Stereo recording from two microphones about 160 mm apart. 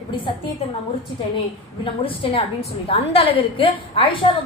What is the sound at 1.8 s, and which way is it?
A woman's voice, 35° left (ahead or behind).